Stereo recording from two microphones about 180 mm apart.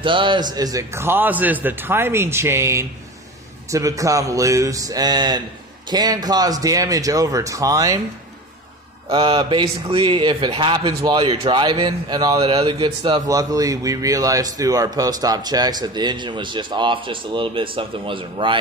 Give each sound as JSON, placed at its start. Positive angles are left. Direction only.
{"t": 0.0, "sound": "a man's voice", "side_deg": -25}
{"t": 9.1, "sound": "speech", "side_deg": -30}